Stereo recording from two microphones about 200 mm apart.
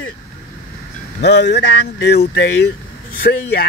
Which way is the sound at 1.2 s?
60° left (ahead or behind).